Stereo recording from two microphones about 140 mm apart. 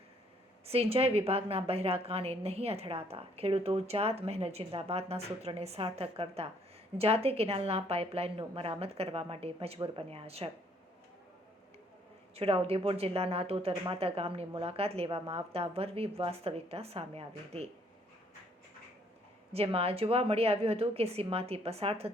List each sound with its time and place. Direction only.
0.6 s a woman's voice: 45° right (ahead or behind)
12.4 s a woman's voice: 45° right (ahead or behind)
19.5 s a woman's voice: 45° right (ahead or behind)